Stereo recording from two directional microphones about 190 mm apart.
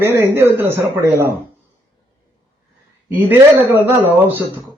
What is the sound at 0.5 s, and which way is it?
Speech, 10° right (ahead or behind).